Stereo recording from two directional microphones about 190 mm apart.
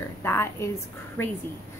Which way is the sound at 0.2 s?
15° left (ahead or behind).